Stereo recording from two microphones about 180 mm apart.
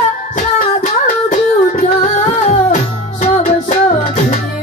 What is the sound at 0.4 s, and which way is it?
Music, 45° left (ahead or behind).